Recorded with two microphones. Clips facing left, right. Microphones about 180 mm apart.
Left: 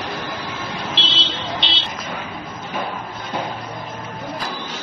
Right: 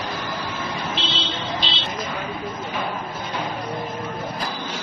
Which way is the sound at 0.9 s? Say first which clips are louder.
Even; 85° left.